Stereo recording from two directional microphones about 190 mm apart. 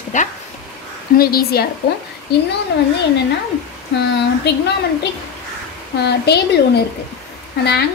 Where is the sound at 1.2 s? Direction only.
50° left (ahead or behind).